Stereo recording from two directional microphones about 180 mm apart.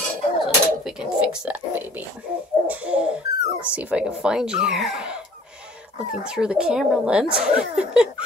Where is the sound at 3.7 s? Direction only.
10° right (ahead or behind).